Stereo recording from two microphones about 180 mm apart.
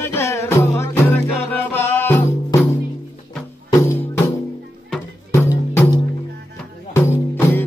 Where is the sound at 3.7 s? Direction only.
15° left (ahead or behind).